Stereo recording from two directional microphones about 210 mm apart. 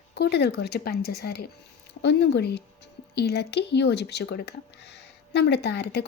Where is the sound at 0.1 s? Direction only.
50° left (ahead or behind).